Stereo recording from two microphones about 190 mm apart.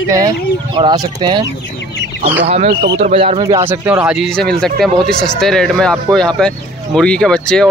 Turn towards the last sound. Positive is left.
turn(degrees=5)  # may be behind; listen again after turning